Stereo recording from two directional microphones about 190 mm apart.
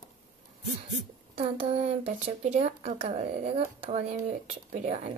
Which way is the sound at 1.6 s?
30° right (ahead or behind).